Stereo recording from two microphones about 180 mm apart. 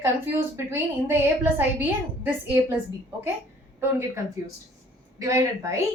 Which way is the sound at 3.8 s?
15° right (ahead or behind).